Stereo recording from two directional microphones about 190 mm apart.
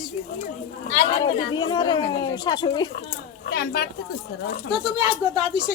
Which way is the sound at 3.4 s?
55° left (ahead or behind).